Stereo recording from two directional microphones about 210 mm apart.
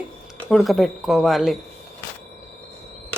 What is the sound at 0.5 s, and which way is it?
Speech, centre (ahead or behind).